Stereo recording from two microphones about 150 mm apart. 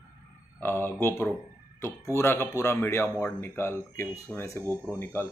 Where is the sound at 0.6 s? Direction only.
15° left (ahead or behind).